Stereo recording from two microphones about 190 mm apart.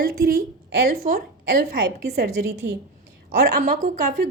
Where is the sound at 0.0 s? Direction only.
55° right (ahead or behind).